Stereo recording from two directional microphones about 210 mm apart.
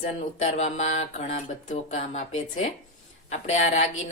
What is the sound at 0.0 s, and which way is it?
Speech, 35° left (ahead or behind).